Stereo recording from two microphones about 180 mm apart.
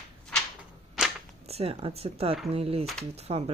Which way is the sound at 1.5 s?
35° right (ahead or behind).